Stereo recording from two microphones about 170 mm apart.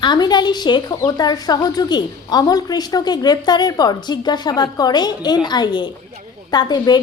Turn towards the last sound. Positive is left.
turn(degrees=25)  # may be behind; listen again after turning